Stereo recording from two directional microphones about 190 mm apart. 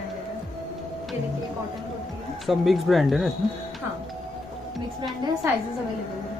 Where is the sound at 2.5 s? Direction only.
Centre (ahead or behind).